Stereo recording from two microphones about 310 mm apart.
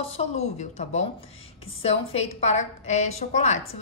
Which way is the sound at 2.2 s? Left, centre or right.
Left.